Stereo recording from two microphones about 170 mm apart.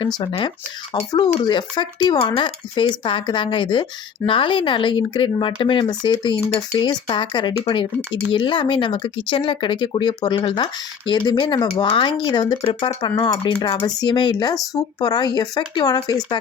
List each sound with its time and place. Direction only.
0.0 s speech: 25° left (ahead or behind)